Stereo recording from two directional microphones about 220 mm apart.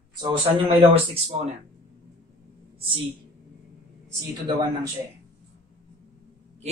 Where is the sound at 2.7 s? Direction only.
25° right (ahead or behind).